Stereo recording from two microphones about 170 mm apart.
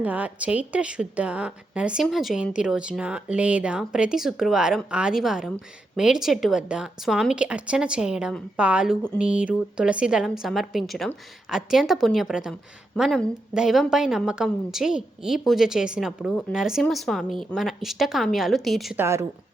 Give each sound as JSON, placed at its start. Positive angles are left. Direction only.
{"t": 0.0, "sound": "a woman's voice", "side_deg": -10}
{"t": 18.9, "sound": "a woman's voice", "side_deg": -15}